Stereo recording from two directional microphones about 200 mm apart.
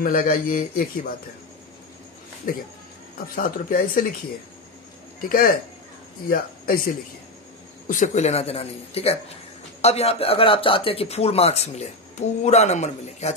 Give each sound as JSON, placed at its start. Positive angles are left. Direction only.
{"t": 0.0, "sound": "speech", "side_deg": 45}
{"t": 2.5, "sound": "speech", "side_deg": 45}
{"t": 5.2, "sound": "speech", "side_deg": 45}
{"t": 7.9, "sound": "speech", "side_deg": 40}